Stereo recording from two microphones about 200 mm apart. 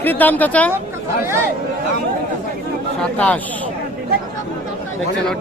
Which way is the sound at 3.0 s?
5° left (ahead or behind).